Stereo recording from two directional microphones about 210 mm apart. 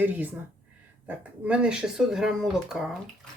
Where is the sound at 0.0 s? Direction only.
10° right (ahead or behind).